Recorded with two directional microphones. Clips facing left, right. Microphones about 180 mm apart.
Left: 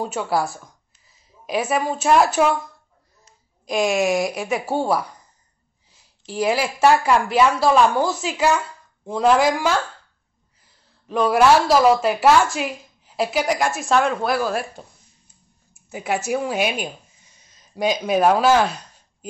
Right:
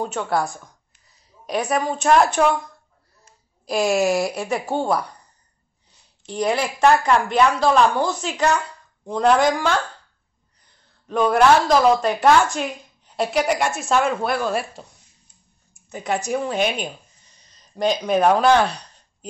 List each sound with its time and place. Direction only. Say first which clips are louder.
0.0 s speech: even; 5° left (ahead or behind)
3.6 s speech: right 1 dB; centre (ahead or behind)
6.2 s speech: left 1 dB; 5° left (ahead or behind)
15.7 s a sound: even; 5° left (ahead or behind)
16.3 s speech: even; 5° left (ahead or behind)